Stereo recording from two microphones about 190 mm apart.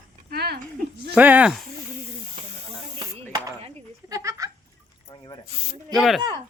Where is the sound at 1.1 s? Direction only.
10° right (ahead or behind).